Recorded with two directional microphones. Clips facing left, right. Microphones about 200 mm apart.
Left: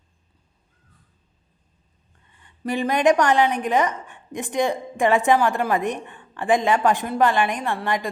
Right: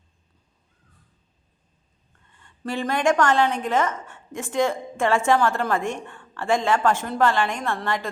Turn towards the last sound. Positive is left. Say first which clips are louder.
# left 2 dB
turn(degrees=15)  # may be behind; listen again after turning